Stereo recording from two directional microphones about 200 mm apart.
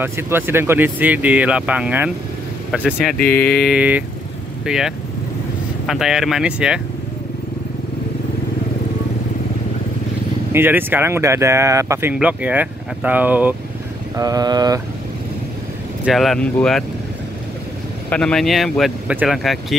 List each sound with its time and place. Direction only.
0.0 s speech: 10° right (ahead or behind)
3.2 s mantra: 50° left (ahead or behind)
3.6 s speech: 5° right (ahead or behind)
10.5 s speech: 10° right (ahead or behind)
14.1 s vehicle: 20° right (ahead or behind)
16.1 s speech: centre (ahead or behind)
18.1 s speech: 5° left (ahead or behind)